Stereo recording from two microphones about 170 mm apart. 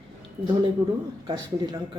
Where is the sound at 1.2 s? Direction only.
25° right (ahead or behind).